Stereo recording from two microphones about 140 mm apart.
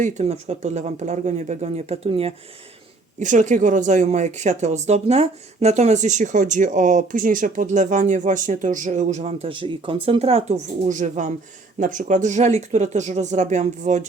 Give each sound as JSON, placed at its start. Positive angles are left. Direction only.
{"t": 0.0, "sound": "speech", "side_deg": -55}
{"t": 3.2, "sound": "speech", "side_deg": -60}
{"t": 9.5, "sound": "speech", "side_deg": -35}